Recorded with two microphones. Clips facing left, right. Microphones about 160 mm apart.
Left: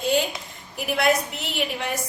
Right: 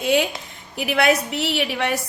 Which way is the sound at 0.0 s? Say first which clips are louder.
Right 3 dB; 70° right (ahead or behind).